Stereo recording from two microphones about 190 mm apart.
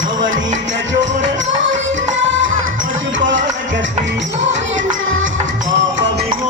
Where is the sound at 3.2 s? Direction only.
70° right (ahead or behind).